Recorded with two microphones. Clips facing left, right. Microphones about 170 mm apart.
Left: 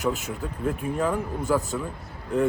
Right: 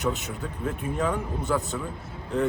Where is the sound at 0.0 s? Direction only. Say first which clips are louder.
Left 1 dB; 35° left (ahead or behind).